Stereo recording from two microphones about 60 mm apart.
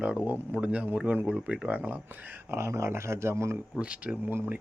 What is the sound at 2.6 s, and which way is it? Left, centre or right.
Speech, right.